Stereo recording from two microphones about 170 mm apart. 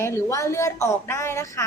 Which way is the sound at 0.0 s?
15° left (ahead or behind).